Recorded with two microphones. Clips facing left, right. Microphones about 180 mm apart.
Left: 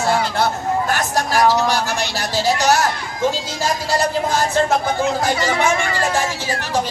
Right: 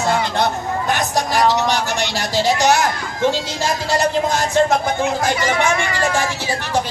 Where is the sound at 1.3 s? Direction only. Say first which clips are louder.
Left 1 dB; 10° left (ahead or behind).